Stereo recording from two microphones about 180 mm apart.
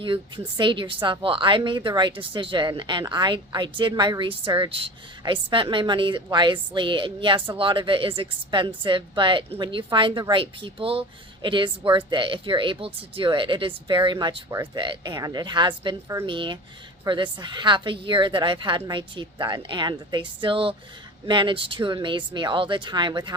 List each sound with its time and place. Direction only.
0.0 s speech: 25° right (ahead or behind)